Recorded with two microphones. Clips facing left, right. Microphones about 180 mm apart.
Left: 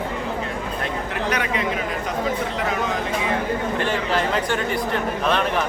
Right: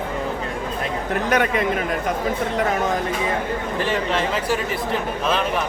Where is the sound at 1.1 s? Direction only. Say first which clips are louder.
Right 6 dB; 50° right (ahead or behind).